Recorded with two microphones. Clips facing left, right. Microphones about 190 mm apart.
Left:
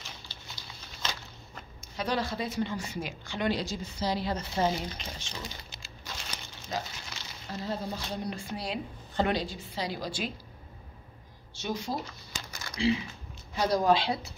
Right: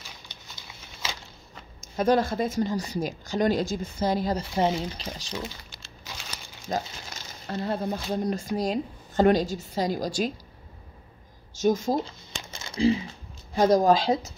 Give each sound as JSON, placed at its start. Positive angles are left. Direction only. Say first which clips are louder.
{"t": 1.0, "sound": "a sound", "louder": "right 1 dB", "side_deg": -10}
{"t": 1.8, "sound": "speech", "louder": "right 9 dB", "side_deg": -45}
{"t": 4.6, "sound": "speech", "louder": "right 3 dB", "side_deg": -25}
{"t": 6.7, "sound": "speech", "louder": "right 5 dB", "side_deg": -45}
{"t": 7.4, "sound": "speech", "louder": "right 6 dB", "side_deg": -65}
{"t": 11.5, "sound": "speech", "louder": "right 10 dB", "side_deg": -45}
{"t": 12.0, "sound": "shuffling cards", "louder": "right 6 dB", "side_deg": -25}
{"t": 13.6, "sound": "speech", "louder": "right 6 dB", "side_deg": -45}